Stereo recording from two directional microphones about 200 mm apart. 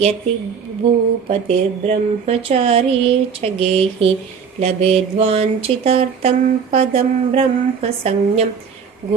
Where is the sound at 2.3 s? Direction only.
30° right (ahead or behind).